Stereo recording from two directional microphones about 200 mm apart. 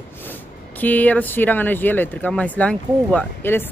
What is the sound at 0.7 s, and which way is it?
Speech, 10° left (ahead or behind).